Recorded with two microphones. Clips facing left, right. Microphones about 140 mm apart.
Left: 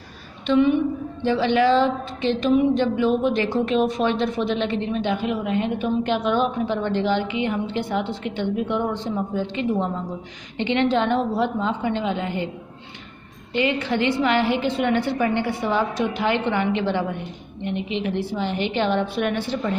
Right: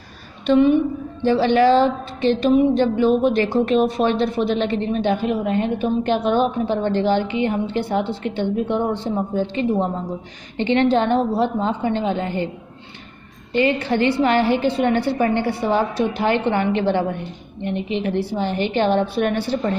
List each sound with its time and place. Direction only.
0.5 s a woman's voice: 40° right (ahead or behind)
13.5 s a woman's voice: 40° right (ahead or behind)